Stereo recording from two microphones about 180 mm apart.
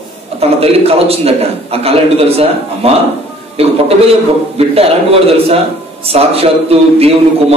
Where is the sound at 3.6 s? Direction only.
35° right (ahead or behind).